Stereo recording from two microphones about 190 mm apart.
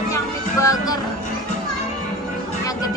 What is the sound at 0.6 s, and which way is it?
Music, 20° left (ahead or behind).